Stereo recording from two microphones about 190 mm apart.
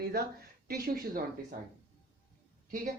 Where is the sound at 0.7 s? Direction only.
50° right (ahead or behind).